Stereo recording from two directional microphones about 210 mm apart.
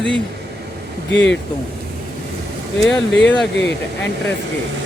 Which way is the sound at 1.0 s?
60° left (ahead or behind).